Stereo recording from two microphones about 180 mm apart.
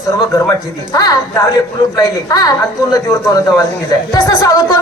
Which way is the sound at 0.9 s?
20° left (ahead or behind).